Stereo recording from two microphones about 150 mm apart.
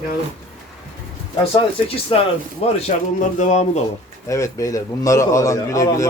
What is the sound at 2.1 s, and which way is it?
Speech, 35° left (ahead or behind).